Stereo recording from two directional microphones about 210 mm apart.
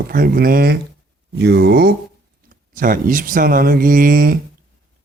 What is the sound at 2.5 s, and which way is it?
Speech, 40° right (ahead or behind).